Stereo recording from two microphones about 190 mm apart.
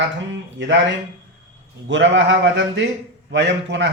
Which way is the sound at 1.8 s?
75° right (ahead or behind).